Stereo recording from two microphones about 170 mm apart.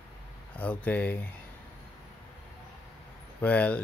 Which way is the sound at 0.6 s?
10° left (ahead or behind).